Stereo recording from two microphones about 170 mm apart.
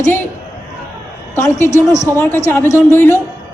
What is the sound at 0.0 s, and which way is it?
Speech, 10° left (ahead or behind).